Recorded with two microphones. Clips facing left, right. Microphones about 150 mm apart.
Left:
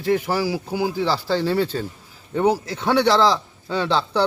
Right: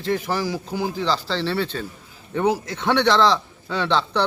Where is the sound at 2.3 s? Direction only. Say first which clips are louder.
Left 2 dB; 30° left (ahead or behind).